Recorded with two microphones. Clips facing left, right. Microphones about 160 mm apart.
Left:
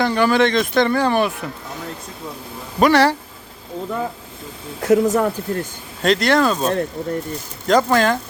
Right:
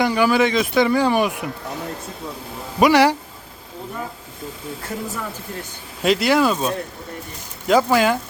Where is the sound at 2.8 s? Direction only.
10° right (ahead or behind).